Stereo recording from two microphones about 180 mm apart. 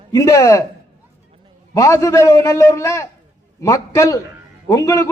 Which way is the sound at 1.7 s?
15° left (ahead or behind).